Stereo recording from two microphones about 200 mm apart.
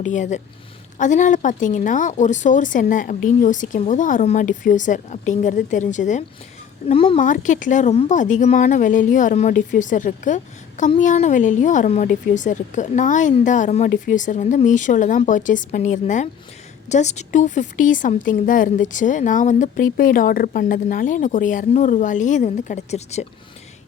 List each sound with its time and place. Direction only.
0.0 s a woman's voice: 40° left (ahead or behind)
6.8 s speech: 25° left (ahead or behind)
7.2 s a woman's voice: 40° left (ahead or behind)